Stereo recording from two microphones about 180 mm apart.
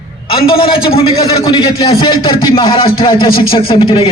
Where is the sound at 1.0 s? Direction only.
25° left (ahead or behind).